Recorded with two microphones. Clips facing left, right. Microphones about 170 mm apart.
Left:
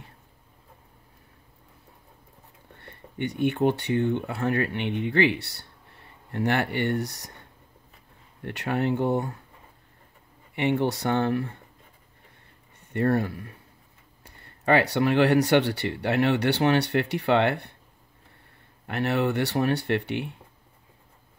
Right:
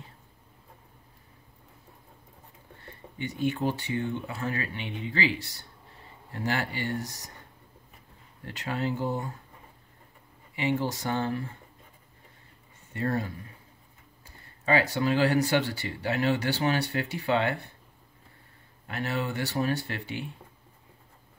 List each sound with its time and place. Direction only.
3.2 s speech: 60° left (ahead or behind)
8.5 s speech: 60° left (ahead or behind)
10.5 s speech: 60° left (ahead or behind)
12.9 s speech: 65° left (ahead or behind)
18.9 s speech: 65° left (ahead or behind)